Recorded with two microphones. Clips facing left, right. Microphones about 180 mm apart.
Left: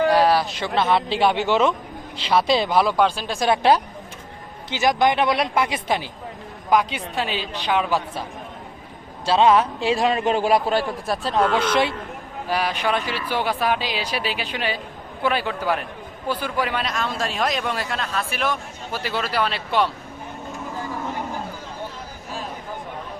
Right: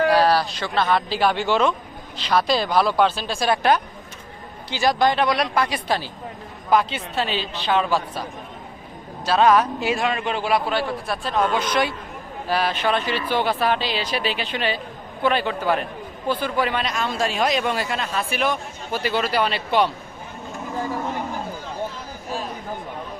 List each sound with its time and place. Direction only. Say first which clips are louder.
0.2 s speech: even; 20° left (ahead or behind)
2.6 s speech: even; centre (ahead or behind)
3.2 s speech: left 1 dB; 15° left (ahead or behind)
9.2 s a man's voice: even; 25° left (ahead or behind)
12.5 s speech: right 1 dB; 10° left (ahead or behind)